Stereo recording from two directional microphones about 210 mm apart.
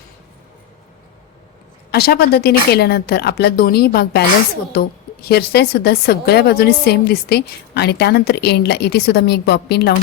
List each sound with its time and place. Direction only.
1.9 s a woman's voice: 50° left (ahead or behind)